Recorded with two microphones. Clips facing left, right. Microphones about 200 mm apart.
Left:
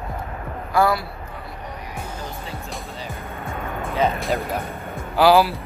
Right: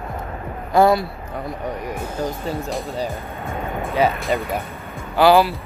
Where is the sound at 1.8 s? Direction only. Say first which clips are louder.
Right 7 dB; 45° right (ahead or behind).